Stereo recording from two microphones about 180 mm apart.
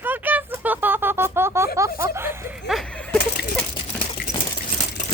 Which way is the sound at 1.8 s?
15° right (ahead or behind).